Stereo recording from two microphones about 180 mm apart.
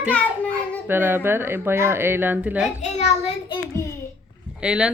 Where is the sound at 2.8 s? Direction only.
35° left (ahead or behind).